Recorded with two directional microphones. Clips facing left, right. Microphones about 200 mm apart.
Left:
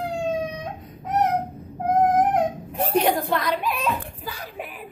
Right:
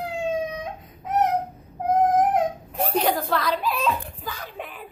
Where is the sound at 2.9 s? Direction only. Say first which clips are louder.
Left 2 dB; 15° left (ahead or behind).